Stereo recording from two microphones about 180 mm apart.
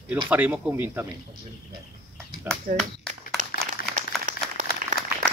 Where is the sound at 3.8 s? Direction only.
60° left (ahead or behind).